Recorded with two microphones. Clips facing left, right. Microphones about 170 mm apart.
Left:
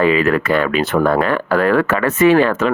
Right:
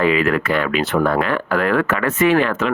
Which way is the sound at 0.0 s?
35° left (ahead or behind).